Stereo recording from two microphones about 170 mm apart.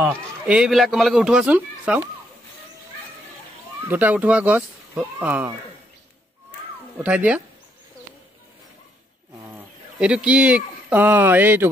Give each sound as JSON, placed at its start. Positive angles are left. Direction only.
{"t": 0.5, "sound": "a man's voice", "side_deg": 0}
{"t": 3.9, "sound": "speech", "side_deg": -10}
{"t": 7.0, "sound": "speech", "side_deg": -10}
{"t": 9.9, "sound": "speech", "side_deg": -5}